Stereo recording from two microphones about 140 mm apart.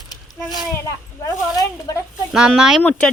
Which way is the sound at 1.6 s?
25° left (ahead or behind).